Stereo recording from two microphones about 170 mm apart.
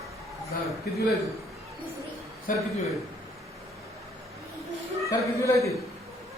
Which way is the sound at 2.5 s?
50° left (ahead or behind).